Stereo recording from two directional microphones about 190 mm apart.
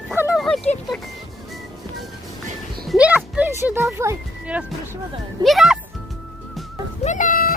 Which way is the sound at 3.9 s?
15° right (ahead or behind).